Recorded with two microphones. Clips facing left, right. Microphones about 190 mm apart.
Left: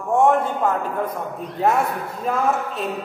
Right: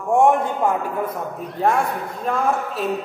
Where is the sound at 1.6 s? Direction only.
Centre (ahead or behind).